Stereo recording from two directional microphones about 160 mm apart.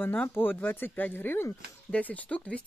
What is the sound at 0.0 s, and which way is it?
Speech, 10° left (ahead or behind).